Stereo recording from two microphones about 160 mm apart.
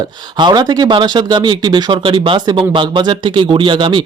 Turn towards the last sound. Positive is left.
turn(degrees=-30)  # may be behind; listen again after turning